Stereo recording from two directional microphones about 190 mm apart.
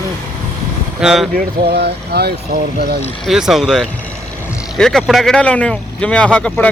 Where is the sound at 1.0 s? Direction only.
Centre (ahead or behind).